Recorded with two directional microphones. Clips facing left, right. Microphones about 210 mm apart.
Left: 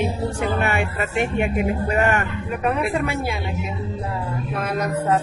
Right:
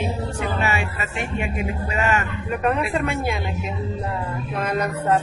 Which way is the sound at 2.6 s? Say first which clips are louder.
Even; 5° left (ahead or behind).